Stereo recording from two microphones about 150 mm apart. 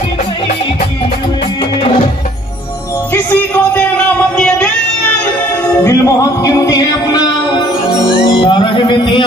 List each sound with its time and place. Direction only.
3.1 s music: 10° left (ahead or behind)
5.9 s music: 25° left (ahead or behind)